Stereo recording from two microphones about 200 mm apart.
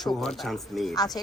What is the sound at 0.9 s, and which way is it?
Speech, 20° left (ahead or behind).